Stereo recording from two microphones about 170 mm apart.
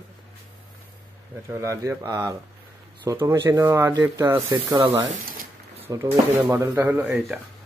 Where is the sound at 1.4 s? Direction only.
15° right (ahead or behind).